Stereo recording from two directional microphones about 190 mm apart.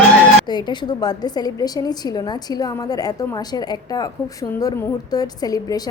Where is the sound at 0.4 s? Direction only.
25° left (ahead or behind).